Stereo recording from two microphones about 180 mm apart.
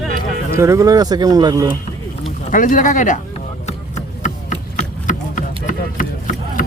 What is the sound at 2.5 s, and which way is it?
Speech, 45° left (ahead or behind).